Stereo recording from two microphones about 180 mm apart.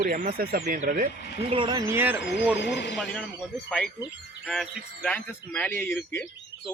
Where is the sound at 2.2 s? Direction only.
75° left (ahead or behind).